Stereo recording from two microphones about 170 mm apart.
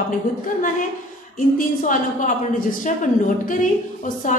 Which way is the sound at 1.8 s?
50° left (ahead or behind).